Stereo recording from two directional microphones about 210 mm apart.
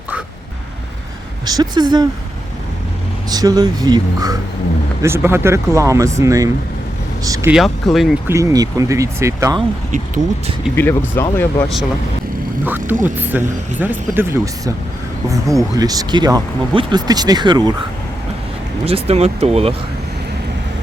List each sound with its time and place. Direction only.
1.5 s speech: 20° right (ahead or behind)
3.2 s speech: 20° right (ahead or behind)
7.5 s speech: centre (ahead or behind)
8.3 s speech: 15° right (ahead or behind)
10.8 s speech: 10° left (ahead or behind)
12.6 s speech: 10° right (ahead or behind)
18.9 s speech: 30° right (ahead or behind)